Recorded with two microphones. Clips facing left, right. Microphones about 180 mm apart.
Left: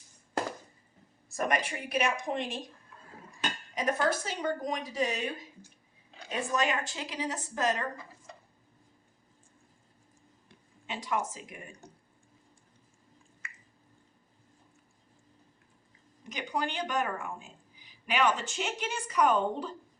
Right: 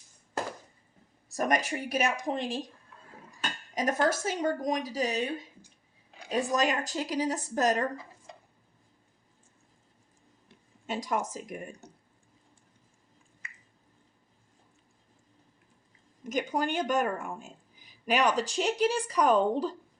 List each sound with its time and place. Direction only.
1.3 s speech: 40° right (ahead or behind)
3.8 s speech: 45° right (ahead or behind)
6.3 s speech: 40° right (ahead or behind)
10.8 s speech: 40° right (ahead or behind)
13.4 s drip: 20° right (ahead or behind)
16.2 s speech: 45° right (ahead or behind)